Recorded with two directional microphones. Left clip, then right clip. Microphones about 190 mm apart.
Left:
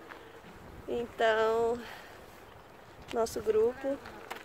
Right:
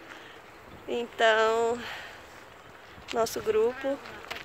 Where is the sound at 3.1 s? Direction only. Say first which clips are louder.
Right 2 dB; 15° right (ahead or behind).